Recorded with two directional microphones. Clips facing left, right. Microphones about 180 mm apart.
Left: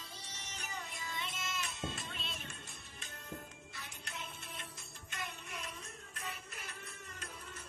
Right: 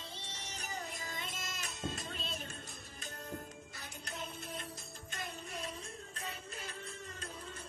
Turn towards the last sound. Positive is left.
turn(degrees=-30)  # may be behind; listen again after turning